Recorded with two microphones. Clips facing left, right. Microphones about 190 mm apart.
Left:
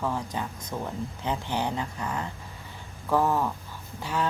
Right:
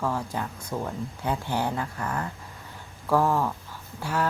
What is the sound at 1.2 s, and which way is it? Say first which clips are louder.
Speech: right 2 dB; 15° left (ahead or behind).